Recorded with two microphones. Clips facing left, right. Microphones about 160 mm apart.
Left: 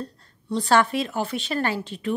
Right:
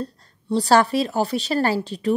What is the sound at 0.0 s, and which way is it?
A woman's voice, 35° right (ahead or behind).